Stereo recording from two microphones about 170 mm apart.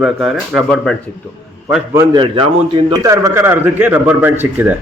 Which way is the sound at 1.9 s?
20° right (ahead or behind).